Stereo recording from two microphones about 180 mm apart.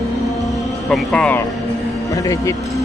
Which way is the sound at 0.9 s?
5° left (ahead or behind).